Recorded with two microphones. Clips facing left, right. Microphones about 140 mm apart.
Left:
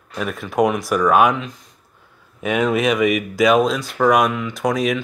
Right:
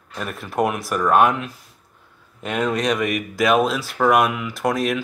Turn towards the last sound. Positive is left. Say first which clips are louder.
# left 2 dB
turn(degrees=0)  # may be behind; listen again after turning